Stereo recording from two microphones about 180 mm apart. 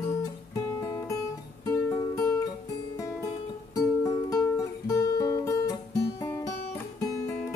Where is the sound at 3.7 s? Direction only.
20° left (ahead or behind).